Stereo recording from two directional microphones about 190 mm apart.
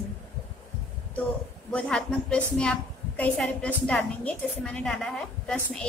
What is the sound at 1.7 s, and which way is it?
A woman's voice, 5° left (ahead or behind).